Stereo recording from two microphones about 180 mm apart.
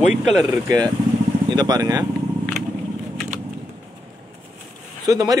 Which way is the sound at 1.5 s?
20° right (ahead or behind).